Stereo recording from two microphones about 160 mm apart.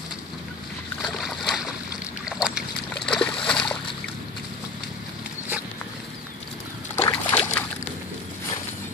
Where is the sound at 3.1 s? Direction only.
5° left (ahead or behind).